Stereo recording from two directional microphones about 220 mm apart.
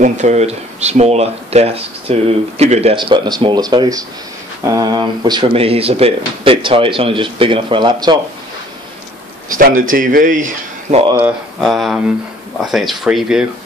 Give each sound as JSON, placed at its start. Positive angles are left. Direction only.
{"t": 0.0, "sound": "speech", "side_deg": -30}
{"t": 9.5, "sound": "speech", "side_deg": -40}
{"t": 11.2, "sound": "speech", "side_deg": 0}